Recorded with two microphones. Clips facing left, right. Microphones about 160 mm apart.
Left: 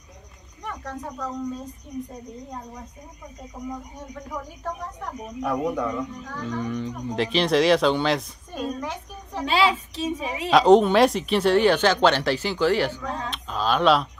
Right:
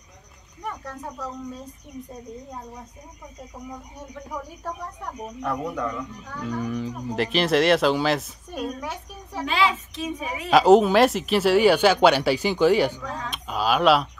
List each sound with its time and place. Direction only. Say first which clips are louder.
5.4 s speech: left 3 dB; 15° left (ahead or behind)
6.4 s speech: right 1 dB; 5° right (ahead or behind)
9.4 s a woman's voice: left 2 dB; 35° left (ahead or behind)
10.5 s speech: even; 5° right (ahead or behind)
13.3 s a sound: right 2 dB; 10° right (ahead or behind)